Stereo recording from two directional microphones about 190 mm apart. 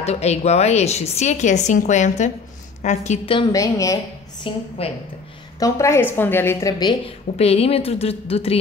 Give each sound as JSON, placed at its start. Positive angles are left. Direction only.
{"t": 0.0, "sound": "a woman's voice", "side_deg": 35}
{"t": 5.6, "sound": "a woman's voice", "side_deg": 15}
{"t": 7.3, "sound": "a woman's voice", "side_deg": 30}